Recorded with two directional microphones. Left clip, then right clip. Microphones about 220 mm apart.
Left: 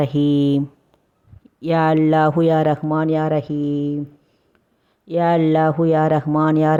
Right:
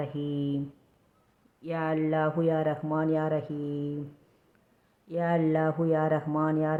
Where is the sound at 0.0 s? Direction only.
50° left (ahead or behind).